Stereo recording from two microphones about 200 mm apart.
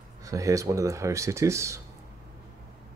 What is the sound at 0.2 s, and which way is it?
Speech, 15° right (ahead or behind).